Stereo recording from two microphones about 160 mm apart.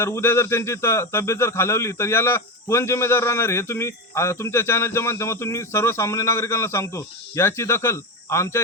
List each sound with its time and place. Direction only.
0.0 s speech: 15° left (ahead or behind)